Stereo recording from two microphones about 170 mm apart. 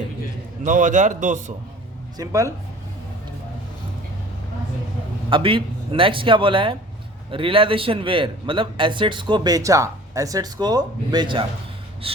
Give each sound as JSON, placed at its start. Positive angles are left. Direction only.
{"t": 0.6, "sound": "a man's voice", "side_deg": -45}
{"t": 2.1, "sound": "a man's voice", "side_deg": -20}
{"t": 5.3, "sound": "a man's voice", "side_deg": -30}